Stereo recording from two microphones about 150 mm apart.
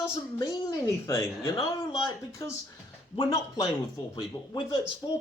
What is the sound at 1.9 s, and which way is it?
Speech, 35° left (ahead or behind).